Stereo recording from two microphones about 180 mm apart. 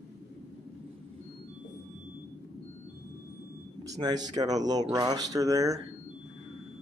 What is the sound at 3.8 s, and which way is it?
Speech, 20° right (ahead or behind).